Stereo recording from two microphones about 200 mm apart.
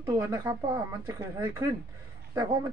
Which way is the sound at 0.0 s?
15° right (ahead or behind).